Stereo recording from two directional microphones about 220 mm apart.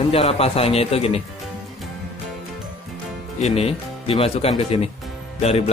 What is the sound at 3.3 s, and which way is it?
Speech, 30° left (ahead or behind).